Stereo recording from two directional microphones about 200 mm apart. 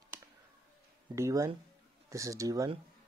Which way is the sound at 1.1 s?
15° right (ahead or behind).